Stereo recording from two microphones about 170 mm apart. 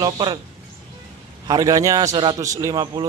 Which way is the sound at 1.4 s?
20° right (ahead or behind).